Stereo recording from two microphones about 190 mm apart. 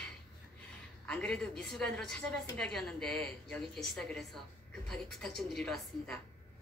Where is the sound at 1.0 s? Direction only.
5° left (ahead or behind).